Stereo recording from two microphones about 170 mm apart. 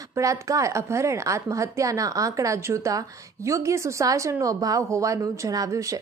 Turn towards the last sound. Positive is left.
turn(degrees=-20)  # may be behind; listen again after turning